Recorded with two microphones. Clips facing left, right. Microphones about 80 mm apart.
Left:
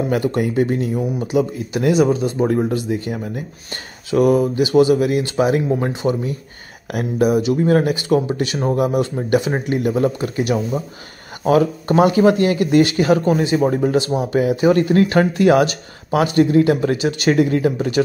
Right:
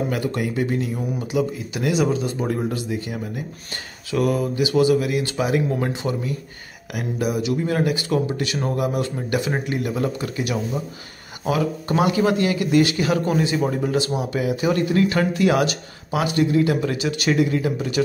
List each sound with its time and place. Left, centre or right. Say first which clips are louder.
0.1 s speech: left 6 dB; left
4.4 s speech: left 5 dB; left